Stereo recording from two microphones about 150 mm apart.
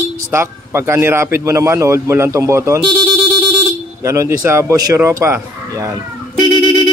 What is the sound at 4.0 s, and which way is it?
Speech, 20° right (ahead or behind).